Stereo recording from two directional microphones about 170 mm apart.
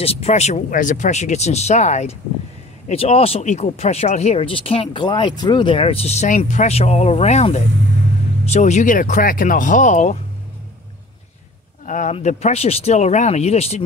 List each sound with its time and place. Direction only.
0.0 s speech: 35° left (ahead or behind)
11.8 s speech: 45° left (ahead or behind)